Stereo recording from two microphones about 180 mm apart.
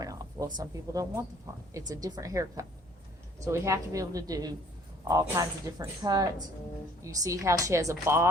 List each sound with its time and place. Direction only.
0.0 s a woman's voice: 20° right (ahead or behind)